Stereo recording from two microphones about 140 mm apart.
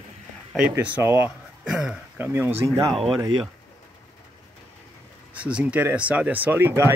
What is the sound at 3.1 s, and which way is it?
Speech, 35° right (ahead or behind).